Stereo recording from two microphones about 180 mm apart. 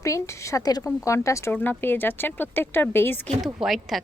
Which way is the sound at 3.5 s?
Centre (ahead or behind).